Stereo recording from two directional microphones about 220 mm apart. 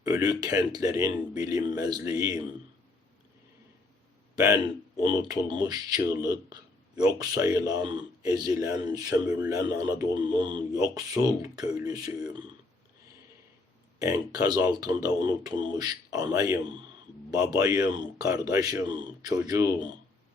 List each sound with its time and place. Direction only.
0.0 s speech: 15° right (ahead or behind)
4.4 s speech: 15° right (ahead or behind)
14.0 s speech: 15° right (ahead or behind)